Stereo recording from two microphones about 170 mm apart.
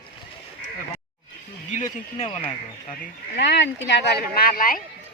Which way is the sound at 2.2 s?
30° left (ahead or behind).